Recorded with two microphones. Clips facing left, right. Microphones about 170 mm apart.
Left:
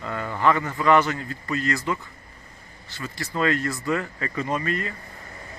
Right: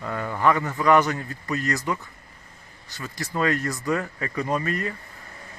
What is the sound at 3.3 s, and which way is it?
A man's voice, 15° right (ahead or behind).